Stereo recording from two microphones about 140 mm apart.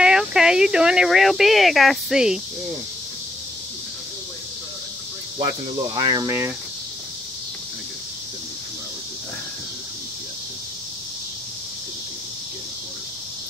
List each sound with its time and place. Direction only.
0.0 s speech: 5° right (ahead or behind)
5.9 s speech: 30° right (ahead or behind)
6.2 s speech: 15° right (ahead or behind)